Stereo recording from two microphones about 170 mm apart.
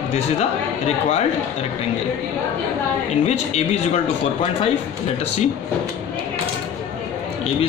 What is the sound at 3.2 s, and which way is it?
Speech, 40° left (ahead or behind).